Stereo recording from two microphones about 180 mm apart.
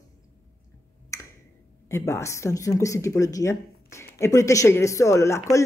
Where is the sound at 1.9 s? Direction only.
15° left (ahead or behind).